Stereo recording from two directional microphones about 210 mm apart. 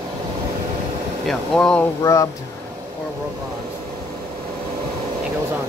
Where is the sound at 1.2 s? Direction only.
5° left (ahead or behind).